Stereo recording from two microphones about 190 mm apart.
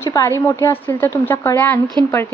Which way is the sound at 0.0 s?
15° left (ahead or behind).